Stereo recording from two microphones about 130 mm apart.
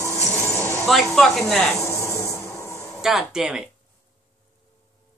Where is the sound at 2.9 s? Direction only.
5° right (ahead or behind).